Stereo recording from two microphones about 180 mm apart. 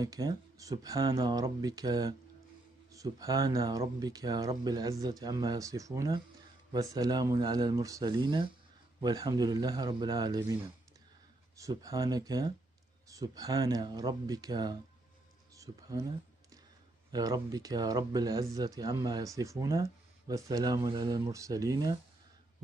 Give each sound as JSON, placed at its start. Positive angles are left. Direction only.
{"t": 0.0, "sound": "speech", "side_deg": -20}
{"t": 15.5, "sound": "a sound", "side_deg": -20}
{"t": 17.1, "sound": "speech", "side_deg": -20}